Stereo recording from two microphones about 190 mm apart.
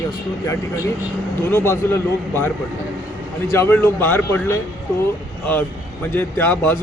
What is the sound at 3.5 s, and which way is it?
Speech, 10° left (ahead or behind).